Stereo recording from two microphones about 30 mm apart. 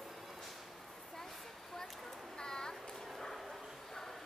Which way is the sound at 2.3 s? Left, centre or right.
Left.